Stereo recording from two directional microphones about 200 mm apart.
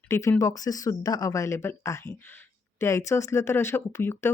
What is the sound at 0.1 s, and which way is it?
Speech, 15° left (ahead or behind).